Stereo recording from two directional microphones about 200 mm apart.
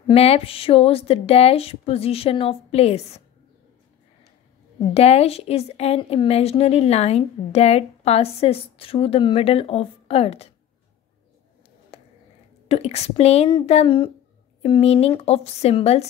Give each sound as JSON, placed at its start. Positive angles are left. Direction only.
{"t": 0.1, "sound": "speech", "side_deg": 30}
{"t": 4.9, "sound": "a woman's voice", "side_deg": 30}
{"t": 11.9, "sound": "a sound", "side_deg": 30}
{"t": 12.6, "sound": "a woman's voice", "side_deg": 30}